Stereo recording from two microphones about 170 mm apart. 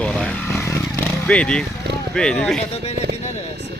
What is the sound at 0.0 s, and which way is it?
Motorcycle, 5° left (ahead or behind).